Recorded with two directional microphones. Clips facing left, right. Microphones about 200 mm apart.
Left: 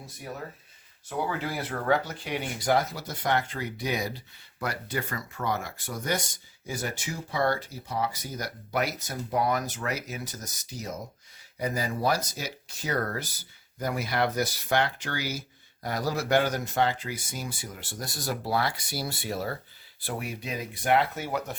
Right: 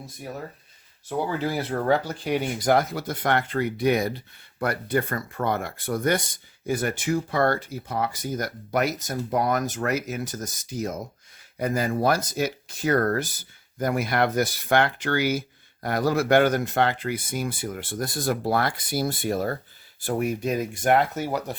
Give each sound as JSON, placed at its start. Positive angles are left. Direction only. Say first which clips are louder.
{"t": 2.2, "sound": "speech", "louder": "right 6 dB", "side_deg": -45}